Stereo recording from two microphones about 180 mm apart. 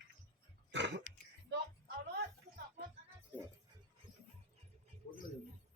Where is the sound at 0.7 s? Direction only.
80° right.